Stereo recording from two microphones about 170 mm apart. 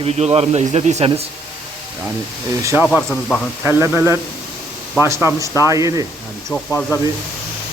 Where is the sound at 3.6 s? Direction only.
15° right (ahead or behind).